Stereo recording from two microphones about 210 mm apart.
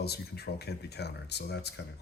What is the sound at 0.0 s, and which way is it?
Speech, 50° left (ahead or behind).